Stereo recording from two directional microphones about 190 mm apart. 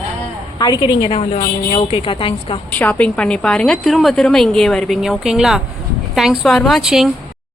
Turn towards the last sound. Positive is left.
turn(degrees=0)  # may be behind; listen again after turning